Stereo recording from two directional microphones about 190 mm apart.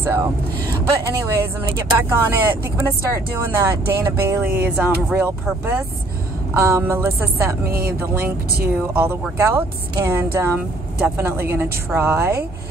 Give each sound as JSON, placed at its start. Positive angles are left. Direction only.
{"t": 0.0, "sound": "speech", "side_deg": -10}
{"t": 7.6, "sound": "speech", "side_deg": -50}
{"t": 8.0, "sound": "speech", "side_deg": -10}